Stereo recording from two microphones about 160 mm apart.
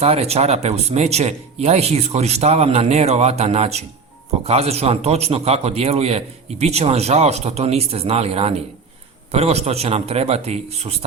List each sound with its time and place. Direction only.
0.0 s a man's voice: 40° right (ahead or behind)